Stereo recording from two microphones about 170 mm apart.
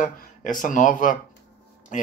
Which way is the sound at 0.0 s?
50° left (ahead or behind).